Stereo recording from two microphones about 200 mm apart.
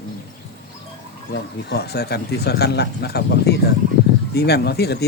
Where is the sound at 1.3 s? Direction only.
55° left (ahead or behind).